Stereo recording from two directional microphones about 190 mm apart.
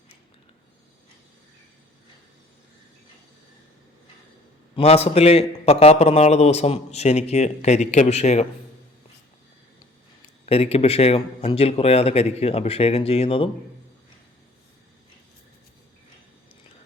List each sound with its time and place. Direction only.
4.7 s a man's voice: 30° left (ahead or behind)
10.4 s a man's voice: 30° left (ahead or behind)